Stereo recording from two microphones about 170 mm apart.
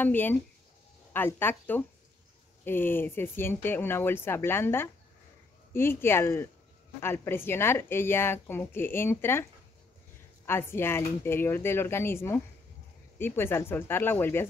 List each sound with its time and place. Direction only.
0.0 s speech: 10° left (ahead or behind)